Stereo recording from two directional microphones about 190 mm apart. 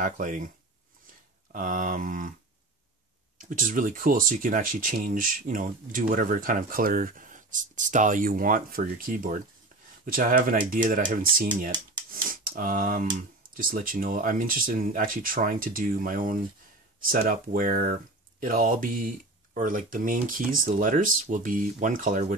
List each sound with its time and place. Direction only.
0.0 s speech: 45° right (ahead or behind)
1.5 s speech: 45° right (ahead or behind)
3.3 s speech: 45° right (ahead or behind)